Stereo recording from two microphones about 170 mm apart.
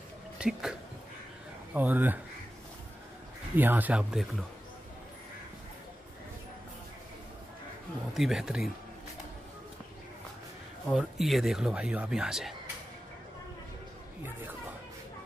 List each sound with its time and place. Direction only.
0.4 s speech: 5° right (ahead or behind)
3.5 s speech: 10° right (ahead or behind)
8.1 s speech: centre (ahead or behind)
10.9 s speech: centre (ahead or behind)